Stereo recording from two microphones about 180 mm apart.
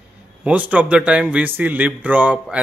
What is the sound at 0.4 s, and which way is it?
A man's voice, 10° right (ahead or behind).